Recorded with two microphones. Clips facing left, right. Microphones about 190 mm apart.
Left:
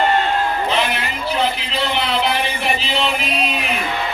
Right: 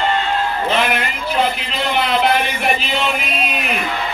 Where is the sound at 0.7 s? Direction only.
55° right (ahead or behind).